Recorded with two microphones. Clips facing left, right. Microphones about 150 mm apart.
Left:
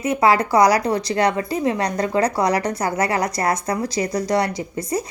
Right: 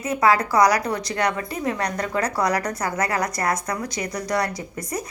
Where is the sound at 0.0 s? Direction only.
25° left (ahead or behind).